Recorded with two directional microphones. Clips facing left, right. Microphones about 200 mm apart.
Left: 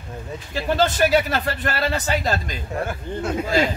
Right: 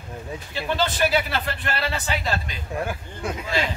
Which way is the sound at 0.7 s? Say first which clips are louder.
Left 5 dB; 45° left (ahead or behind).